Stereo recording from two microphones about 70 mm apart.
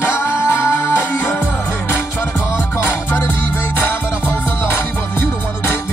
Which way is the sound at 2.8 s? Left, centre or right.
Left.